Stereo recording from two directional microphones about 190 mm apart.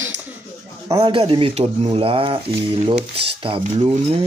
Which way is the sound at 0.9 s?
25° right (ahead or behind).